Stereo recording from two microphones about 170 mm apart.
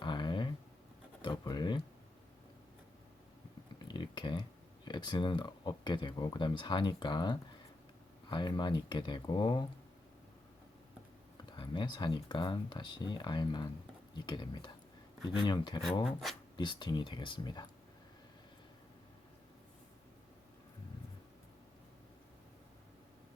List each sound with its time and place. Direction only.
0.0 s a sound: 25° left (ahead or behind)
1.2 s speech: 25° left (ahead or behind)
3.8 s a sound: 25° left (ahead or behind)
4.9 s speech: 25° left (ahead or behind)
11.5 s speech: 30° left (ahead or behind)
16.2 s speech: centre (ahead or behind)
16.6 s speech: 25° left (ahead or behind)